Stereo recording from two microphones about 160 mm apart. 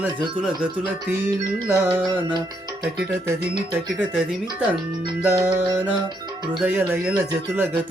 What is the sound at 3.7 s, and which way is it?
Music, 10° right (ahead or behind).